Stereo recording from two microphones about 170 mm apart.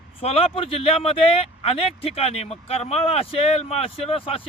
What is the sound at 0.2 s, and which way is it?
Speech, 35° left (ahead or behind).